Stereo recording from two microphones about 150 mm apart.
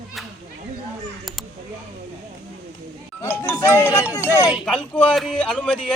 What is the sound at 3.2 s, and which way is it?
Music, 15° left (ahead or behind).